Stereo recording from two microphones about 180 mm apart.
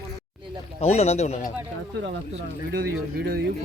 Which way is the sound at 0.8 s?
35° left (ahead or behind).